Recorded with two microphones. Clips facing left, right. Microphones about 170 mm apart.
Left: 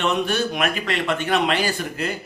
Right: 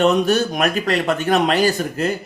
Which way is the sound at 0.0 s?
40° right (ahead or behind).